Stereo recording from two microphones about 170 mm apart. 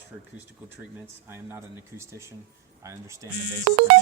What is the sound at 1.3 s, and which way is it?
Speech, 15° right (ahead or behind).